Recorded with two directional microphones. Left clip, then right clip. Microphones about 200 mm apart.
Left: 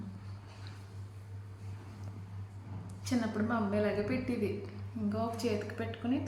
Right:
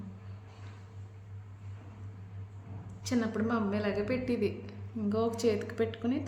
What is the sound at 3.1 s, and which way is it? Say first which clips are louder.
A woman's voice: right 2 dB; 50° right (ahead or behind).